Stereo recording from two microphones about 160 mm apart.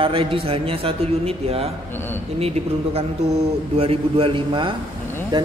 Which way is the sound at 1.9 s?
15° left (ahead or behind).